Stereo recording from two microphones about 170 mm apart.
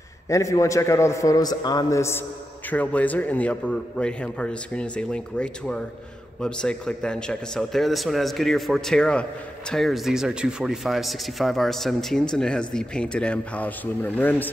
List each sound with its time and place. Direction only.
0.3 s a man's voice: 20° left (ahead or behind)